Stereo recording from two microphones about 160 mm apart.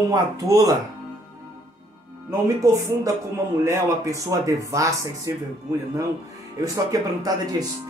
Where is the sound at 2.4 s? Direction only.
20° right (ahead or behind).